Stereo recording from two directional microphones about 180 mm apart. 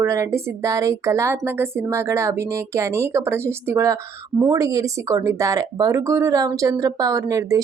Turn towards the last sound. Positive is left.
turn(degrees=-20)  # may be behind; listen again after turning